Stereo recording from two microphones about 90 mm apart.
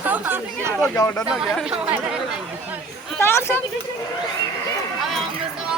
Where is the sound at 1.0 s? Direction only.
40° left (ahead or behind).